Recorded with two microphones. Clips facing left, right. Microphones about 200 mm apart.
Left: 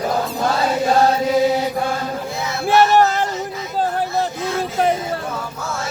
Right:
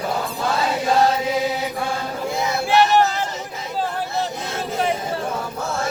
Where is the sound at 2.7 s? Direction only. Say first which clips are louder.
Left 3 dB; 45° left (ahead or behind).